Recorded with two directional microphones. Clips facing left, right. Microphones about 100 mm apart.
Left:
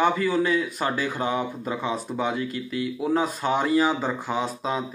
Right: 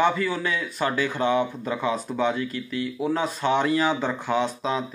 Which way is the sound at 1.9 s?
5° left (ahead or behind).